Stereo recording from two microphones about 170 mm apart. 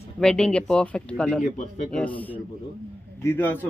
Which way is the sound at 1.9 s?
10° left (ahead or behind).